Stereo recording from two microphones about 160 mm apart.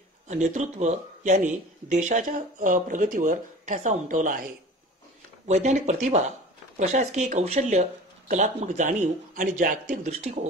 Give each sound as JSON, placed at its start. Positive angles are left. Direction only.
{"t": 0.3, "sound": "speech", "side_deg": -50}
{"t": 5.5, "sound": "speech", "side_deg": -45}